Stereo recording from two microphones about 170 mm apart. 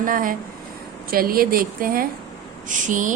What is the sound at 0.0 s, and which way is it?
A woman's voice, 55° right (ahead or behind).